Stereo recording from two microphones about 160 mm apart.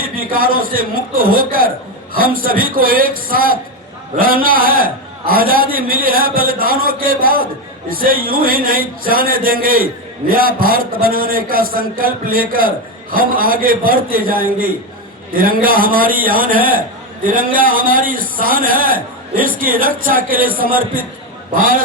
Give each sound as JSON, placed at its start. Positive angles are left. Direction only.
{"t": 0.0, "sound": "a man's voice", "side_deg": -65}